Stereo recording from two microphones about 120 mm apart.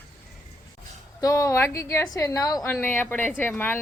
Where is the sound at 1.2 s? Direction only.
25° left (ahead or behind).